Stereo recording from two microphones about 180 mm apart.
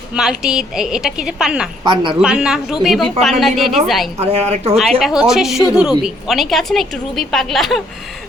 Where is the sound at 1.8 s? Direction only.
25° right (ahead or behind).